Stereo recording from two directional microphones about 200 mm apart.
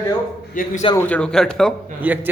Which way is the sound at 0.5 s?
40° left (ahead or behind).